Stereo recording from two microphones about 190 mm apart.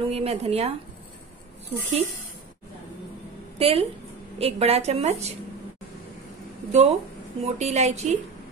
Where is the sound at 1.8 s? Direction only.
35° right (ahead or behind).